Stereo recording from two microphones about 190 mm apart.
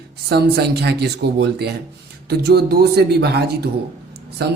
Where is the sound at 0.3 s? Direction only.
60° right (ahead or behind).